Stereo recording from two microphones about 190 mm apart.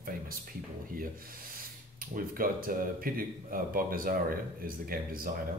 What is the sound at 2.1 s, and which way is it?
Speech, 50° right (ahead or behind).